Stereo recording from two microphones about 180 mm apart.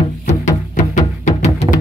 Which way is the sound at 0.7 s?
40° left (ahead or behind).